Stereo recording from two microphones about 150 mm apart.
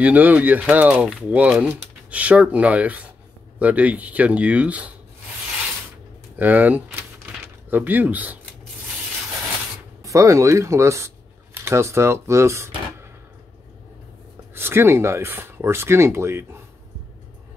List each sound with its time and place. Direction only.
0.0 s speech: 10° right (ahead or behind)
6.3 s speech: 10° right (ahead or behind)
10.0 s speech: 20° right (ahead or behind)
14.5 s speech: 15° right (ahead or behind)